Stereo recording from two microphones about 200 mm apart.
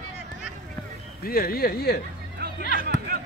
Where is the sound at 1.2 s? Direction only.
50° left (ahead or behind).